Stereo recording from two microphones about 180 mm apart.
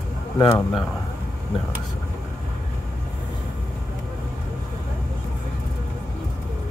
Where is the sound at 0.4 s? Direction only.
20° left (ahead or behind).